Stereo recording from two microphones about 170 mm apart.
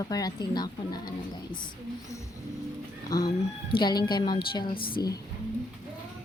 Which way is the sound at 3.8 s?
25° left (ahead or behind).